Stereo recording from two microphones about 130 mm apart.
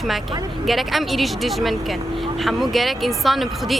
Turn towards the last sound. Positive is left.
turn(degrees=0)  # may be behind; listen again after turning